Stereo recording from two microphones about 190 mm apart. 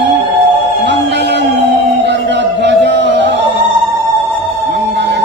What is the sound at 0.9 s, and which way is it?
Music, 65° right (ahead or behind).